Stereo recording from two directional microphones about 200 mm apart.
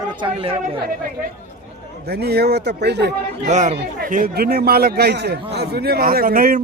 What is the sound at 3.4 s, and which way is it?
A man's voice, 35° right (ahead or behind).